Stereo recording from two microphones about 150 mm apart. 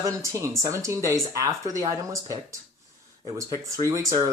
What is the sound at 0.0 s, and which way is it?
Speech, 20° right (ahead or behind).